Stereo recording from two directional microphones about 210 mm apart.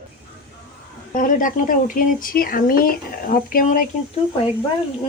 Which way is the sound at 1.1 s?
40° left (ahead or behind).